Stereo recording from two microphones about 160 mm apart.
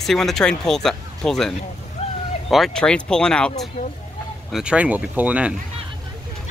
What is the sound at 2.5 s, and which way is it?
Speech, centre (ahead or behind).